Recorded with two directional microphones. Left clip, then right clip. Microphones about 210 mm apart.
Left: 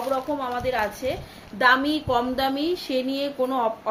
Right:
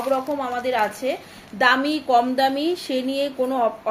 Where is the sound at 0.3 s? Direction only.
25° right (ahead or behind).